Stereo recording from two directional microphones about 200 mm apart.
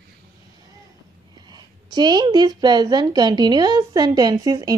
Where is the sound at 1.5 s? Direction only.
20° right (ahead or behind).